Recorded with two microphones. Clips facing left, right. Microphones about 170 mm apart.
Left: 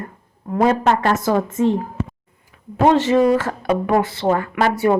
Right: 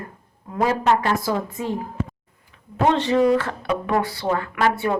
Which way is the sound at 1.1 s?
70° left (ahead or behind).